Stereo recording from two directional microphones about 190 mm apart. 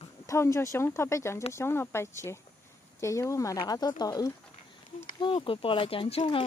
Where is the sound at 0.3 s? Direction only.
15° left (ahead or behind).